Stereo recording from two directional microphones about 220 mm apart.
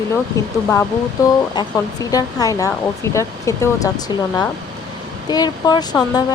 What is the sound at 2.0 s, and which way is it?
Speech, 15° left (ahead or behind).